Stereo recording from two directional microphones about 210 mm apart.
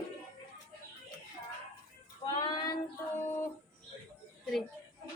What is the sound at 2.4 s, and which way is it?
Child singing, 20° left (ahead or behind).